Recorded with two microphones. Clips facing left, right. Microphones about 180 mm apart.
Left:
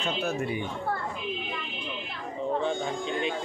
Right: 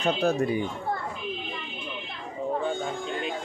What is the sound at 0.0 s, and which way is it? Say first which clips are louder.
Speech: right 5 dB; 35° right (ahead or behind).